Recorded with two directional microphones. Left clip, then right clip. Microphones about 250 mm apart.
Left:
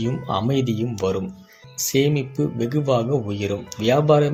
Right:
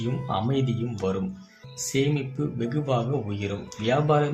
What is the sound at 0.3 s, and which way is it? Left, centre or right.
Speech, left.